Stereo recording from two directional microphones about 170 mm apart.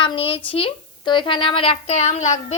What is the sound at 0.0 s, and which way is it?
A woman's voice, 30° left (ahead or behind).